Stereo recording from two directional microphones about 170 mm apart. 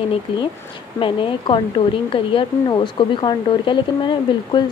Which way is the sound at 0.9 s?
30° left (ahead or behind).